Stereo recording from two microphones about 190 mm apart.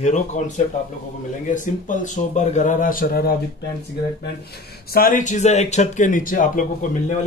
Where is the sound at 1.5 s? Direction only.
40° left (ahead or behind).